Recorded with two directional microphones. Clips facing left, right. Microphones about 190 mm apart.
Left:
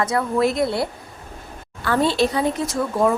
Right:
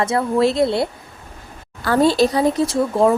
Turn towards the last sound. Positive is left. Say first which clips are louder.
# right 4 dB
turn(degrees=-30)  # may be behind; listen again after turning